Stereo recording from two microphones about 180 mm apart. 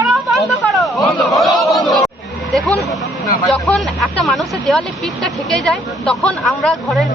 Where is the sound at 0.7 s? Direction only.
Centre (ahead or behind).